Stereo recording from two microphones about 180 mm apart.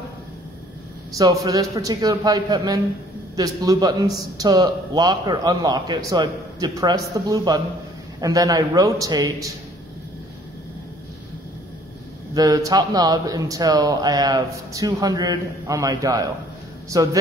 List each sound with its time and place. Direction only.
1.1 s a man's voice: 20° right (ahead or behind)
12.4 s a man's voice: 20° right (ahead or behind)